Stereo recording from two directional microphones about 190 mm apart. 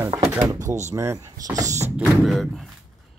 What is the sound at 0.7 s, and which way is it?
Speech, 40° right (ahead or behind).